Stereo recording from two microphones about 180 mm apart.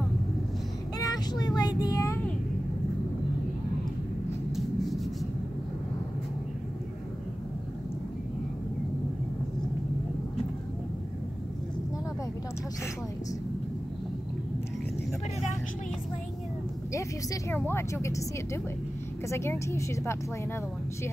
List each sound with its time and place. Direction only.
0.9 s child singing: 20° left (ahead or behind)
1.6 s a sound: 20° left (ahead or behind)
4.5 s vehicle: centre (ahead or behind)
16.9 s a woman's voice: 15° left (ahead or behind)